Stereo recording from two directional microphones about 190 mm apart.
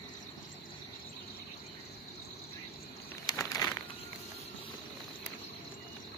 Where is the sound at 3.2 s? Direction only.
15° left (ahead or behind).